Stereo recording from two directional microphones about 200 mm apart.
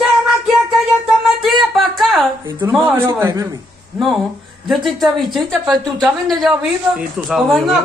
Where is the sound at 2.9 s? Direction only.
10° right (ahead or behind).